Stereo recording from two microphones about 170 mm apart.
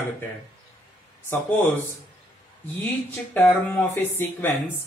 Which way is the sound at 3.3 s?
10° left (ahead or behind).